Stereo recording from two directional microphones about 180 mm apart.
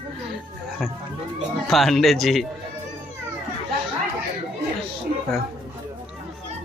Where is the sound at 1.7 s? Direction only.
Centre (ahead or behind).